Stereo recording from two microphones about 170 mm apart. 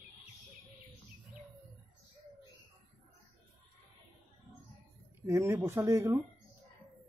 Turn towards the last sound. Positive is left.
turn(degrees=-15)  # may be behind; listen again after turning